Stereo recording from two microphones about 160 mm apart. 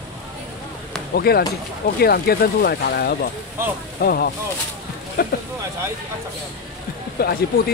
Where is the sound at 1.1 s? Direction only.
80° left.